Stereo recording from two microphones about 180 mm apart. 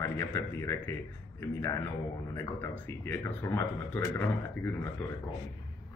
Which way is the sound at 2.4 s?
15° left (ahead or behind).